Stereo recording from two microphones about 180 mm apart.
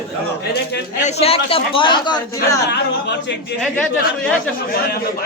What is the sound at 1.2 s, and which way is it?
A man's voice, 30° left (ahead or behind).